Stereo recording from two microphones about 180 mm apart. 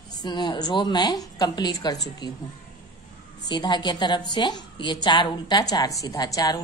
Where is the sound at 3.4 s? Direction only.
25° left (ahead or behind).